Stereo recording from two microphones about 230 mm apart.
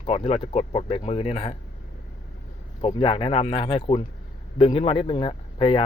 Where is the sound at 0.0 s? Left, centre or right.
Left.